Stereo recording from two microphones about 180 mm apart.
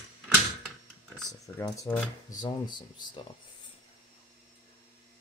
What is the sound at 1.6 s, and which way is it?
Speech, 20° left (ahead or behind).